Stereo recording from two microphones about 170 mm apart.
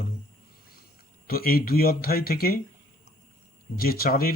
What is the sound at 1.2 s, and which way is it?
Speech, 60° left (ahead or behind).